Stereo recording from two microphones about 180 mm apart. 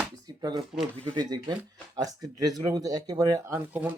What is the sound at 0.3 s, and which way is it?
Speech, 25° right (ahead or behind).